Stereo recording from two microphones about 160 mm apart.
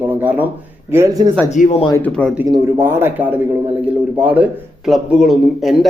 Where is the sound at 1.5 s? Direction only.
50° left (ahead or behind).